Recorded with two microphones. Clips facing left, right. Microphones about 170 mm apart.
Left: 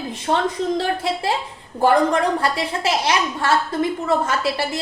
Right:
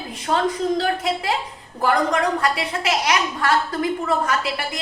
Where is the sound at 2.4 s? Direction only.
30° left (ahead or behind).